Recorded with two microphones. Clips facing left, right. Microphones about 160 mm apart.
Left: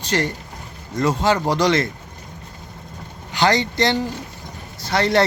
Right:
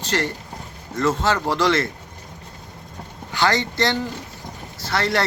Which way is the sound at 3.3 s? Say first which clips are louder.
Left 2 dB; 15° left (ahead or behind).